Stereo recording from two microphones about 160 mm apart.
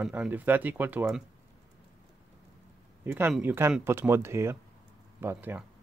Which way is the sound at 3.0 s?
15° right (ahead or behind).